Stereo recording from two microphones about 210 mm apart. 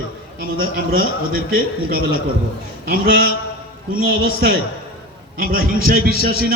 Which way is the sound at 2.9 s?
45° right (ahead or behind).